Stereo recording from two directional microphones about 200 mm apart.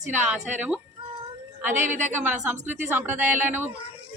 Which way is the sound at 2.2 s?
10° right (ahead or behind).